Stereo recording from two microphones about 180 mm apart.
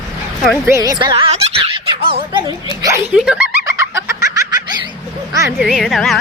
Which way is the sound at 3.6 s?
15° right (ahead or behind).